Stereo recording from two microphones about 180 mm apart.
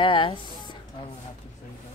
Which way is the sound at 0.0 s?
30° left (ahead or behind).